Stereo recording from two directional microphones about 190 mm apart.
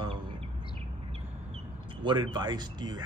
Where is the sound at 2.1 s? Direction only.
25° right (ahead or behind).